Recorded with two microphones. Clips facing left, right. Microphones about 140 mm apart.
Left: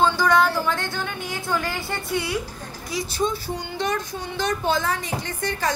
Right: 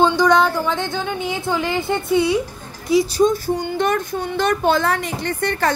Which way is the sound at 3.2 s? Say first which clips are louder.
Right 8 dB; 45° right (ahead or behind).